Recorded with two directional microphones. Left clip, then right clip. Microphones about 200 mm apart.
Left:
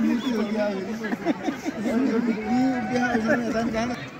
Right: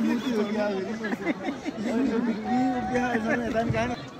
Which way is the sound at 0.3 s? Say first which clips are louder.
Left 1 dB; 50° left (ahead or behind).